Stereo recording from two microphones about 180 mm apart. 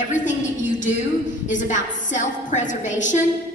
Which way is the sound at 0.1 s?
45° left (ahead or behind).